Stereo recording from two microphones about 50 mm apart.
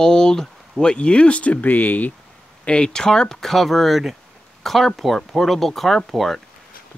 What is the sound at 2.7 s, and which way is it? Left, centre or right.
Speech, centre.